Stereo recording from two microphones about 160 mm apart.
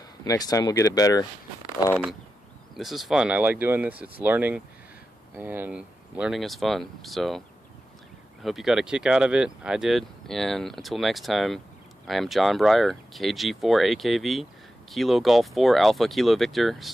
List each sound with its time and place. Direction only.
0.2 s speech: 25° left (ahead or behind)
2.8 s speech: centre (ahead or behind)